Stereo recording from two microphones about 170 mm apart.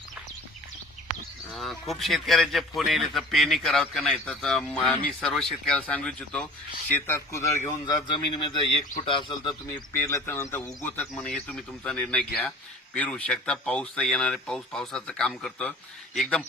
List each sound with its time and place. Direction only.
1.5 s speech: centre (ahead or behind)
6.9 s speech: 15° left (ahead or behind)
9.9 s speech: 15° left (ahead or behind)